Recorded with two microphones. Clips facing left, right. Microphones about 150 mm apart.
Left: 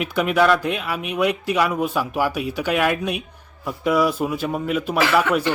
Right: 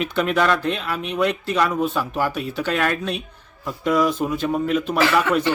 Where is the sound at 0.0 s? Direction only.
10° left (ahead or behind).